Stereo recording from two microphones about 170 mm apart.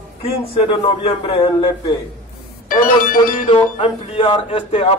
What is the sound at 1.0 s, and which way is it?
Speech, 35° left (ahead or behind).